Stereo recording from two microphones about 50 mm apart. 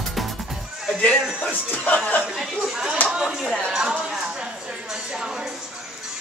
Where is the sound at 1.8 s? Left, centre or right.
Left.